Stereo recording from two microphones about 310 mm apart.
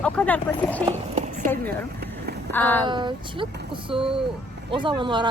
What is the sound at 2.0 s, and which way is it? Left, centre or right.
Run, right.